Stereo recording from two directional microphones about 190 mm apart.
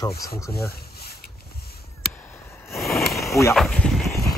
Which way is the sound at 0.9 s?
55° left (ahead or behind).